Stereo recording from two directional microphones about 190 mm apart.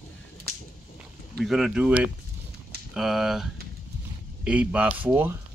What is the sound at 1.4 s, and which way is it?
Speech, centre (ahead or behind).